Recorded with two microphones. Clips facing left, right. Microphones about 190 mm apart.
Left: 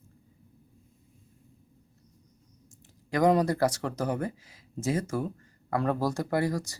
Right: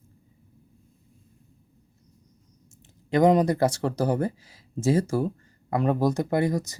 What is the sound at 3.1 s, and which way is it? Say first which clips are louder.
Speech: right 4 dB; 20° right (ahead or behind).